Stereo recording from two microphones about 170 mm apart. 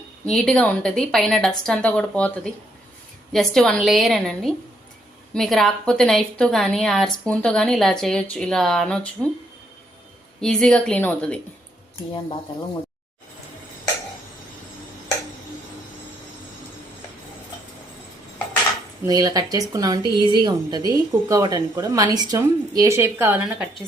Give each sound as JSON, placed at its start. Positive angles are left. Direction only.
{"t": 0.3, "sound": "a woman's voice", "side_deg": 0}
{"t": 10.4, "sound": "a woman's voice", "side_deg": 5}
{"t": 19.0, "sound": "a woman's voice", "side_deg": -20}